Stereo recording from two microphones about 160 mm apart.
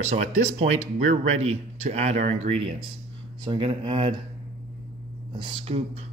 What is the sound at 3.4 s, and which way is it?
Speech, 30° right (ahead or behind).